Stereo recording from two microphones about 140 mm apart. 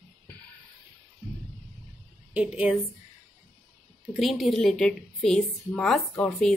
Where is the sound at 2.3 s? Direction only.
10° right (ahead or behind).